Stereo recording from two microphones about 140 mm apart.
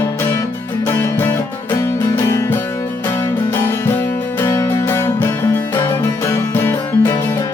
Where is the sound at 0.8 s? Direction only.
15° left (ahead or behind).